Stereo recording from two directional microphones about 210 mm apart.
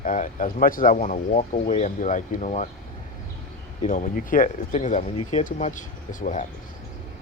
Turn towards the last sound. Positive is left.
turn(degrees=40)  # may be behind; listen again after turning